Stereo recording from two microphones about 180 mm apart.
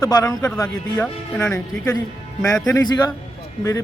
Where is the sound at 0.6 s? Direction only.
5° left (ahead or behind); by 3.1 s 25° left (ahead or behind).